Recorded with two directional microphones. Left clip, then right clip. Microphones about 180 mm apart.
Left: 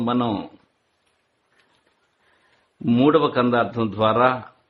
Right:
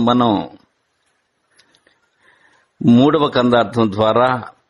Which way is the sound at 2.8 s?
40° right (ahead or behind).